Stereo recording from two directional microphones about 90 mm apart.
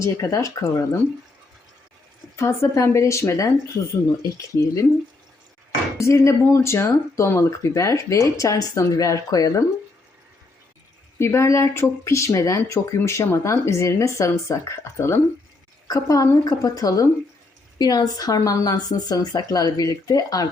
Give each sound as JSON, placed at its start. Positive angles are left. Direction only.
{"t": 0.0, "sound": "speech", "side_deg": 35}
{"t": 2.3, "sound": "speech", "side_deg": 30}
{"t": 6.0, "sound": "speech", "side_deg": 35}
{"t": 11.2, "sound": "speech", "side_deg": 30}
{"t": 15.9, "sound": "speech", "side_deg": 40}